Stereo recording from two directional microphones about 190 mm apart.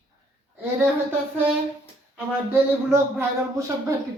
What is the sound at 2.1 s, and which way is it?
Speech, 10° right (ahead or behind).